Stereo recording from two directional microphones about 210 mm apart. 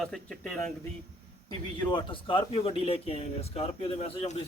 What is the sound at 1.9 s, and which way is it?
A man's voice, 20° left (ahead or behind).